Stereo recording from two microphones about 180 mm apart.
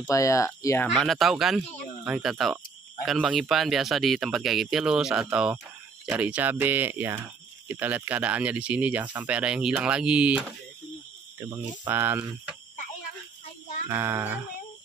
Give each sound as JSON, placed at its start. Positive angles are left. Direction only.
{"t": 0.1, "sound": "speech", "side_deg": 15}
{"t": 0.8, "sound": "speech", "side_deg": 0}
{"t": 13.8, "sound": "speech", "side_deg": -15}